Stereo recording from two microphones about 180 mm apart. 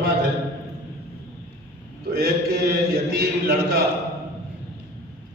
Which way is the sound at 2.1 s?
55° right (ahead or behind).